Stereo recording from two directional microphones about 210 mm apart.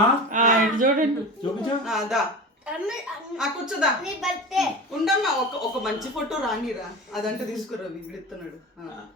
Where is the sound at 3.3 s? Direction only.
5° right (ahead or behind).